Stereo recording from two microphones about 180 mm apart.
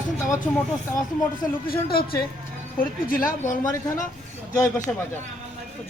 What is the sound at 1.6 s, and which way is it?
A woman's voice, 55° left (ahead or behind).